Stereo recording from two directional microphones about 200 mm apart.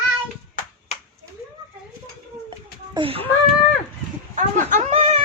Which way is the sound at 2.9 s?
25° right (ahead or behind).